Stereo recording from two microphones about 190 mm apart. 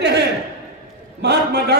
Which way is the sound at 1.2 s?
60° right (ahead or behind).